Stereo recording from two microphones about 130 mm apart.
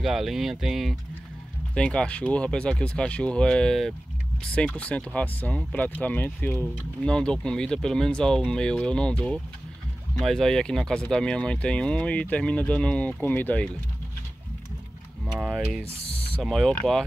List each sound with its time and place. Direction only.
0.0 s speech: centre (ahead or behind); by 13.7 s 15° left (ahead or behind)
15.4 s speech: centre (ahead or behind)
16.0 s mechanisms: 45° left (ahead or behind)
16.3 s speech: 5° left (ahead or behind)